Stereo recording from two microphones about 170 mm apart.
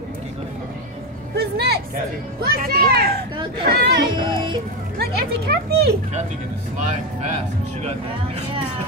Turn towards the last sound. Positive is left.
turn(degrees=-40)  # may be behind; listen again after turning